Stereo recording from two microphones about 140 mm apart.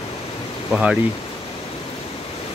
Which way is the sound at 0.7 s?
5° right (ahead or behind).